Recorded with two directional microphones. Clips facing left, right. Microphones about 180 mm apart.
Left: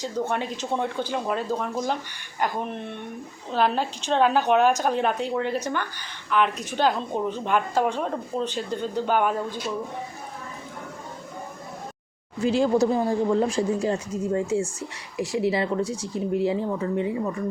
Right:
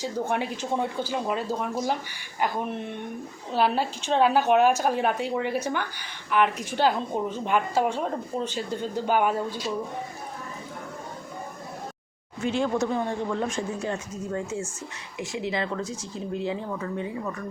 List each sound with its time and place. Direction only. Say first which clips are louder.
0.0 s a woman's voice: left 1 dB; 10° right (ahead or behind)
12.4 s speech: left 5 dB; 35° left (ahead or behind)